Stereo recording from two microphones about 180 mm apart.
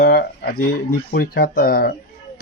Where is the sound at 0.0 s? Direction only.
60° left (ahead or behind).